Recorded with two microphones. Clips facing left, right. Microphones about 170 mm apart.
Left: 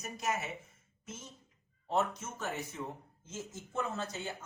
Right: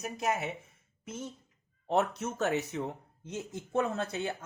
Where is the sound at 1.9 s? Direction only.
70° right (ahead or behind).